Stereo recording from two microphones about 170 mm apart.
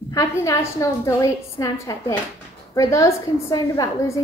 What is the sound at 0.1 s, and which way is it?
A woman's voice, 20° left (ahead or behind).